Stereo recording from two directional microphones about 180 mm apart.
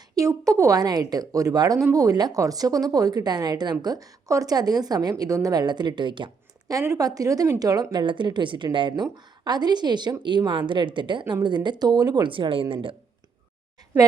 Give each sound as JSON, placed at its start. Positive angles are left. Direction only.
{"t": 0.2, "sound": "speech", "side_deg": -20}